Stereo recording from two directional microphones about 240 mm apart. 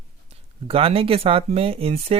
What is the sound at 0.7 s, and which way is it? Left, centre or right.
Speech, right.